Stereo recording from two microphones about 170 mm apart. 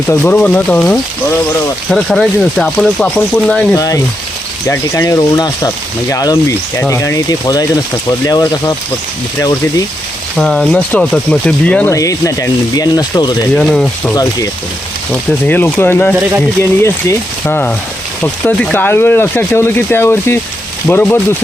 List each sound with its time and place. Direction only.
0.1 s speech: 10° left (ahead or behind)
3.8 s speech: 20° left (ahead or behind)
10.3 s speech: 5° left (ahead or behind)
11.9 s speech: 20° left (ahead or behind)
13.6 s speech: 5° left (ahead or behind)
14.2 s speech: 20° left (ahead or behind)
15.1 s speech: 10° left (ahead or behind)